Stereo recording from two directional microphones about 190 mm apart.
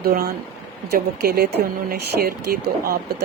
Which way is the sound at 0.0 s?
50° right (ahead or behind).